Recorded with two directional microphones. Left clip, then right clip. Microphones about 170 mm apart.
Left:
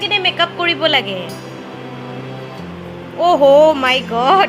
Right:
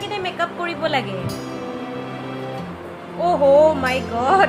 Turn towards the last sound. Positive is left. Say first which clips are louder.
# left 5 dB
turn(degrees=30)  # may be behind; listen again after turning